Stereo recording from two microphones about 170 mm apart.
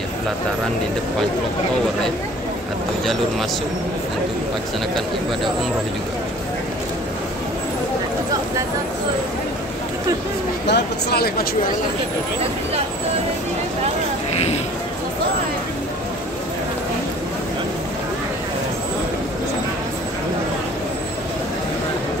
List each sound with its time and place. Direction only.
10.7 s speech: 70° left (ahead or behind)
14.3 s speech: 40° left (ahead or behind)